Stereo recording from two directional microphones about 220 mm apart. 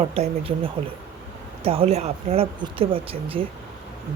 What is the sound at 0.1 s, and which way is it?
Speech, 25° right (ahead or behind).